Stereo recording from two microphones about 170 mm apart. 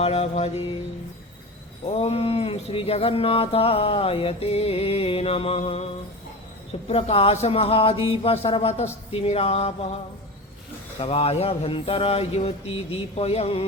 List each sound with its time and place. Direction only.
0.0 s mantra: 35° left (ahead or behind)
1.9 s mantra: 35° left (ahead or behind)
6.8 s mantra: 35° left (ahead or behind)
11.0 s mantra: 35° left (ahead or behind)